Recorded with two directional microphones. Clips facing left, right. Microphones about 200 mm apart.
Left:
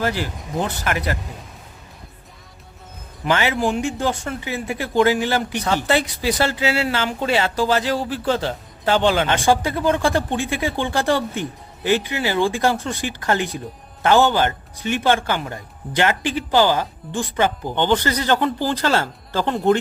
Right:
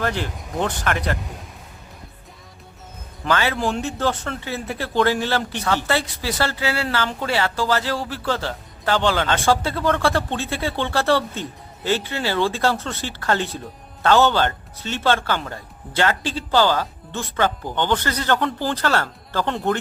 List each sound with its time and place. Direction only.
0.0 s speech: 5° left (ahead or behind)
3.2 s speech: 15° left (ahead or behind)